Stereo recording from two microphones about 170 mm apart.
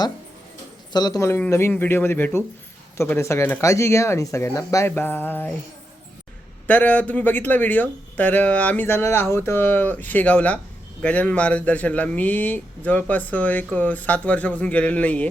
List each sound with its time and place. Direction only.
0.9 s a man's voice: 20° left (ahead or behind)
6.7 s a man's voice: 10° left (ahead or behind)